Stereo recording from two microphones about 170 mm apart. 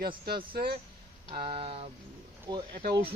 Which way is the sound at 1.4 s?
35° right (ahead or behind).